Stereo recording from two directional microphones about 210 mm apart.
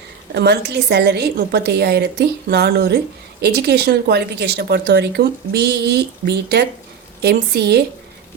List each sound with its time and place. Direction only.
0.3 s a woman's voice: 55° right (ahead or behind)